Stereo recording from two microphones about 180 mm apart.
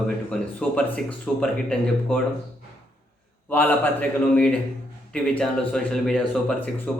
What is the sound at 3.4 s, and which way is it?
Speech, 10° left (ahead or behind).